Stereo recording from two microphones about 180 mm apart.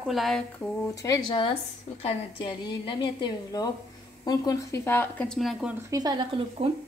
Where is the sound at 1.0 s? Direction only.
20° left (ahead or behind); by 5.7 s centre (ahead or behind).